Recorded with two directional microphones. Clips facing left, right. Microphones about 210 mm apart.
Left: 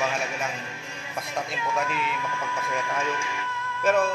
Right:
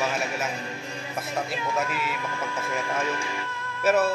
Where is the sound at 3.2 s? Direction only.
35° right (ahead or behind).